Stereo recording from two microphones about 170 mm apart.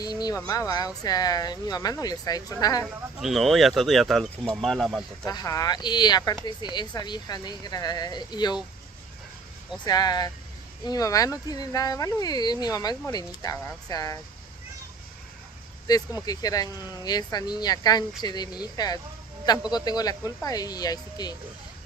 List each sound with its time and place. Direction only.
0.0 s speech: 25° left (ahead or behind)
3.2 s speech: centre (ahead or behind)
5.2 s speech: 20° left (ahead or behind)
9.8 s speech: 25° left (ahead or behind)
15.9 s speech: 25° left (ahead or behind)